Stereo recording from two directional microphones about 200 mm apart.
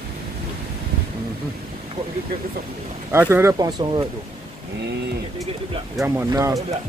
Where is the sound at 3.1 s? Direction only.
10° right (ahead or behind).